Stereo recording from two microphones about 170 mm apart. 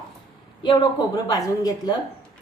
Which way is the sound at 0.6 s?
25° left (ahead or behind).